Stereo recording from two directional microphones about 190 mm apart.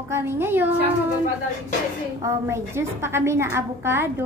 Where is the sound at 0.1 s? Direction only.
10° right (ahead or behind).